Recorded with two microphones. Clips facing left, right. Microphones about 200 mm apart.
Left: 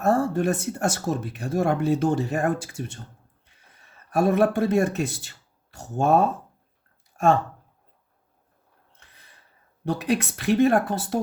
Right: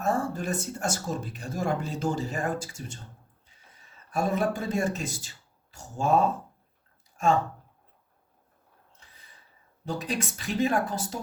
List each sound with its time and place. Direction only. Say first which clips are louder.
0.0 s speech: left 7 dB; 60° left (ahead or behind)
4.1 s speech: left 7 dB; 65° left (ahead or behind)
9.8 s speech: left 7 dB; 65° left (ahead or behind)